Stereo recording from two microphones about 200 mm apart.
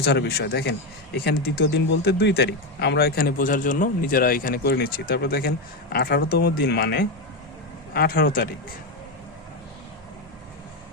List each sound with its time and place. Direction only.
0.0 s speech: 55° left (ahead or behind)